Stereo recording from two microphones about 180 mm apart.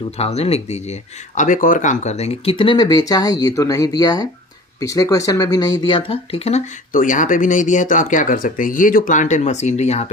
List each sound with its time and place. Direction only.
0.2 s speech: 35° left (ahead or behind)
1.4 s speech: 45° left (ahead or behind)
6.9 s speech: 45° left (ahead or behind)